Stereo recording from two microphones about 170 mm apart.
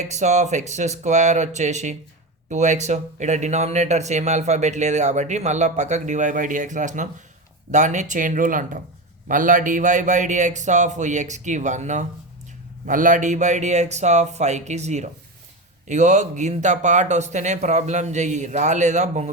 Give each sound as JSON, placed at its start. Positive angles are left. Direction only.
{"t": 0.1, "sound": "speech", "side_deg": -45}